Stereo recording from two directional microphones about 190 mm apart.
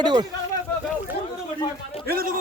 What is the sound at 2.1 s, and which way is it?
Speech, 50° right (ahead or behind).